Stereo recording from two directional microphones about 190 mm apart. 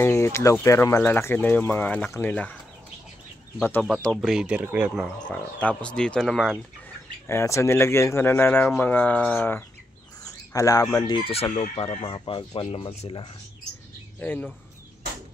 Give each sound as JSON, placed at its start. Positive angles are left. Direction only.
{"t": 0.0, "sound": "speech", "side_deg": 15}
{"t": 3.5, "sound": "speech", "side_deg": 10}
{"t": 5.3, "sound": "speech", "side_deg": 5}
{"t": 7.2, "sound": "speech", "side_deg": 15}
{"t": 10.2, "sound": "bird", "side_deg": 15}
{"t": 11.1, "sound": "speech", "side_deg": 25}
{"t": 14.2, "sound": "speech", "side_deg": 10}